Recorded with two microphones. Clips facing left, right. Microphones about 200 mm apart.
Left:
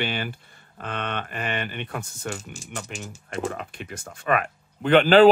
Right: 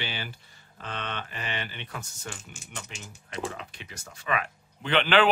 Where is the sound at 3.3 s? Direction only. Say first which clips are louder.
Left 5 dB; 50° left (ahead or behind).